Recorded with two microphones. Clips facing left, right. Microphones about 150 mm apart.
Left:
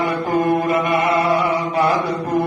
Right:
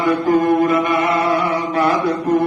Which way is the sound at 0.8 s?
25° left (ahead or behind).